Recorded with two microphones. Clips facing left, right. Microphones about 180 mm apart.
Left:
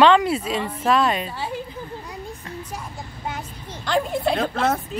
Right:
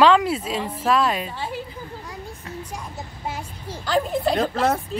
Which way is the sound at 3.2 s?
10° right (ahead or behind).